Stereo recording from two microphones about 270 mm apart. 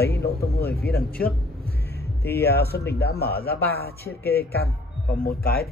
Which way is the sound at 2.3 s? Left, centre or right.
Left.